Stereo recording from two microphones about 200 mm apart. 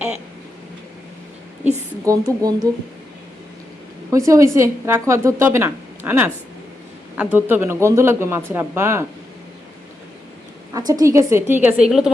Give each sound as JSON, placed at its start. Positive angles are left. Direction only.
{"t": 2.1, "sound": "a woman's voice", "side_deg": -15}
{"t": 4.1, "sound": "a woman's voice", "side_deg": -15}
{"t": 10.8, "sound": "a woman's voice", "side_deg": -20}